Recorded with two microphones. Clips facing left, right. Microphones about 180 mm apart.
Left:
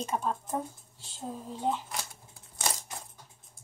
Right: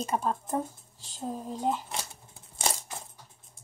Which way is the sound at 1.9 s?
25° right (ahead or behind).